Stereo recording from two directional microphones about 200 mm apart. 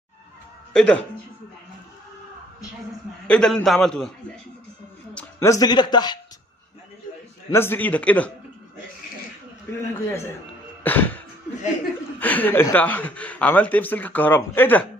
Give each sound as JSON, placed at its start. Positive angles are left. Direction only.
{"t": 0.7, "sound": "a man's voice", "side_deg": 5}
{"t": 3.3, "sound": "a man's voice", "side_deg": 5}
{"t": 5.1, "sound": "speech", "side_deg": 15}
{"t": 7.5, "sound": "speech", "side_deg": 10}
{"t": 9.7, "sound": "speech", "side_deg": 10}
{"t": 10.8, "sound": "music", "side_deg": 10}
{"t": 12.2, "sound": "speech", "side_deg": 10}